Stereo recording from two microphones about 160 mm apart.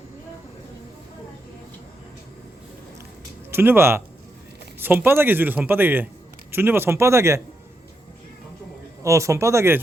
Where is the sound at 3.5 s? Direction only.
15° right (ahead or behind).